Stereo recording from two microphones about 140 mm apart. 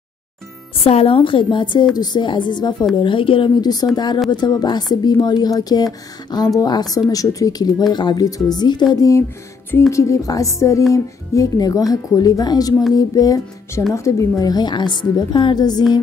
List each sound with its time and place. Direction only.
0.8 s a woman's voice: 45° left (ahead or behind)